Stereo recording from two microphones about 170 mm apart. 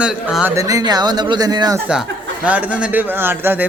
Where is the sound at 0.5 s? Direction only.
20° right (ahead or behind).